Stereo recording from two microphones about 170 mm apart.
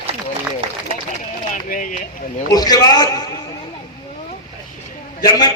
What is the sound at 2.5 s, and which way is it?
Speech, 20° left (ahead or behind).